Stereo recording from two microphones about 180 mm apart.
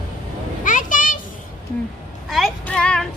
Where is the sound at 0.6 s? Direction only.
45° left (ahead or behind).